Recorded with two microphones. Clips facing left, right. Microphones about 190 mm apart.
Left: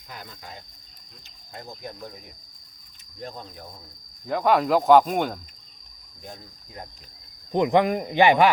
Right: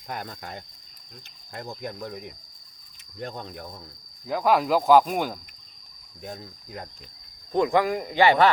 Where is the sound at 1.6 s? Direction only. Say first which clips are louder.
Right 4 dB; 60° right (ahead or behind).